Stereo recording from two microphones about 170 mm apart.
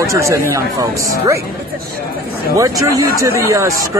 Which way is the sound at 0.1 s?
15° right (ahead or behind).